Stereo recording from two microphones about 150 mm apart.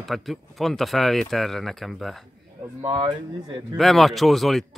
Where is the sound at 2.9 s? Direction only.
35° right (ahead or behind).